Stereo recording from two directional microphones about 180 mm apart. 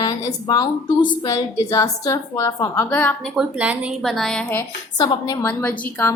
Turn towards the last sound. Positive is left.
turn(degrees=10)  # may be behind; listen again after turning